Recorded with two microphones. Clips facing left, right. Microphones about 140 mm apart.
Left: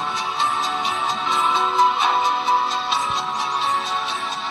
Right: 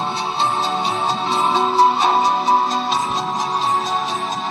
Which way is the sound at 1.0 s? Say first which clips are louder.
Right 2 dB; 35° right (ahead or behind).